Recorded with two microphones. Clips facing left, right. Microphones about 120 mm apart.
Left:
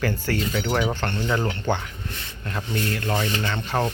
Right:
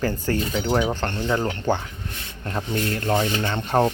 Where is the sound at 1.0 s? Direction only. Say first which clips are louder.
Right 1 dB; 15° right (ahead or behind).